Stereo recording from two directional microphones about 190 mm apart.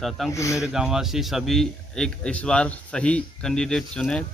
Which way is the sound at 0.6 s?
5° right (ahead or behind).